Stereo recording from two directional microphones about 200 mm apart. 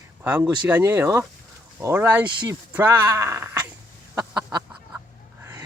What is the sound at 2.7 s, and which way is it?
Speech, 10° right (ahead or behind).